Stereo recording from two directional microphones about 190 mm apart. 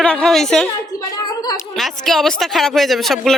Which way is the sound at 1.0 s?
20° left (ahead or behind).